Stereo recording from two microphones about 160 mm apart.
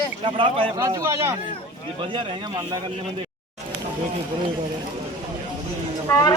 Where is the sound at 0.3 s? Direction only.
35° right (ahead or behind).